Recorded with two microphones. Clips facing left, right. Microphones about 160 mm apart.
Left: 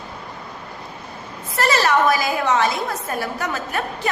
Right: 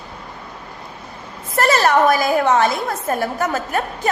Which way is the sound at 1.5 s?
50° right (ahead or behind).